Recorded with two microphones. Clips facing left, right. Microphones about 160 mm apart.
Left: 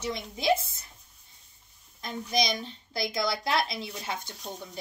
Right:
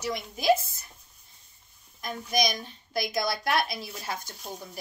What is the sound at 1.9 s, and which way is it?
A woman's voice, 25° left (ahead or behind).